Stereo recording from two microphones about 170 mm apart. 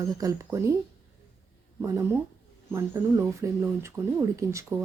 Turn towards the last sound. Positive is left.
turn(degrees=-15)  # may be behind; listen again after turning